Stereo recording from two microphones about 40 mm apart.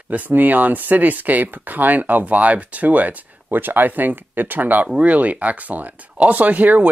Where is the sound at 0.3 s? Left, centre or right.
Right.